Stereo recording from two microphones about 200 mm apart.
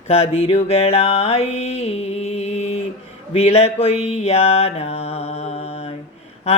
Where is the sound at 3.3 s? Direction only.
30° left (ahead or behind).